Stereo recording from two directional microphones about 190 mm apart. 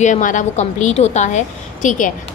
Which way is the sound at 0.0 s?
40° left (ahead or behind).